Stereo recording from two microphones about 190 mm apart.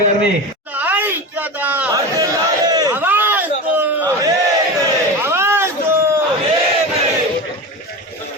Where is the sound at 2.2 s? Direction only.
20° right (ahead or behind).